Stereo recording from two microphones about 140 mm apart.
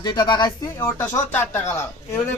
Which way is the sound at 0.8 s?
20° left (ahead or behind).